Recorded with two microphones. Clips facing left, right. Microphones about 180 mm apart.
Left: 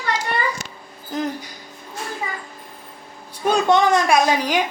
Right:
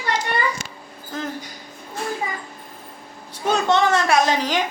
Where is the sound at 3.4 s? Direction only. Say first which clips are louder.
Left 2 dB; 15° left (ahead or behind).